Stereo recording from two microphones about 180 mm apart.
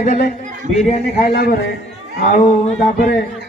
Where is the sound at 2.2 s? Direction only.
45° left (ahead or behind).